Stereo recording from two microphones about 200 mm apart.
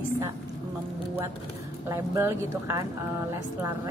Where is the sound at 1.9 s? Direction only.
15° right (ahead or behind).